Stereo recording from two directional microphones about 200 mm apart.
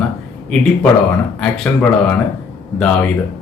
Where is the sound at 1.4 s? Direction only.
5° left (ahead or behind).